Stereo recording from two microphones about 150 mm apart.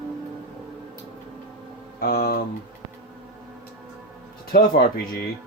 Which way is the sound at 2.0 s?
85° left.